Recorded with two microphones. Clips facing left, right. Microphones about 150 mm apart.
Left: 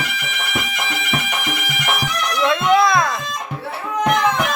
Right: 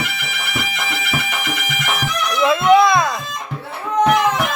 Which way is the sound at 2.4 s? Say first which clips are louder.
Right 3 dB; centre (ahead or behind).